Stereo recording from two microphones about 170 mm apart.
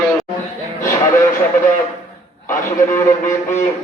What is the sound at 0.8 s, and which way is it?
Speech, 15° left (ahead or behind).